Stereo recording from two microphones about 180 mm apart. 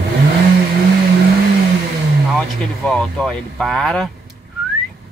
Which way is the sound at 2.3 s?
Centre (ahead or behind).